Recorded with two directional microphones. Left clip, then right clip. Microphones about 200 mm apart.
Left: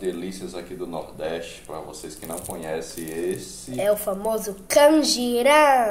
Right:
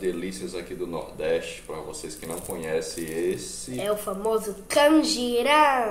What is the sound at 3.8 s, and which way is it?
Speech, 25° left (ahead or behind).